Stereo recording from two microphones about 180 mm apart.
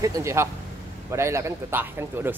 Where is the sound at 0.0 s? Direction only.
15° right (ahead or behind).